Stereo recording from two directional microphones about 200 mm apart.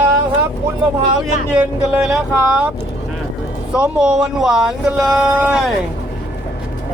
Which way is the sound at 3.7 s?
5° right (ahead or behind).